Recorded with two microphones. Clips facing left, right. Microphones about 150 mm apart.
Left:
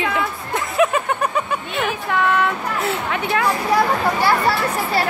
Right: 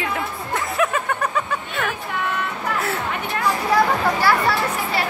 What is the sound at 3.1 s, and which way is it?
Speech, 90° left.